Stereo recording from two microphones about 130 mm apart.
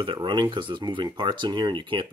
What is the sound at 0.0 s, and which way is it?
Speech, 40° right (ahead or behind).